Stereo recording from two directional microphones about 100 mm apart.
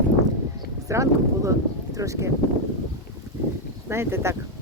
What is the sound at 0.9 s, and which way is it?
Speech, 30° right (ahead or behind).